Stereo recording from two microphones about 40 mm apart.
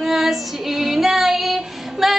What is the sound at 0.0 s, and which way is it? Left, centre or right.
Female singing, centre.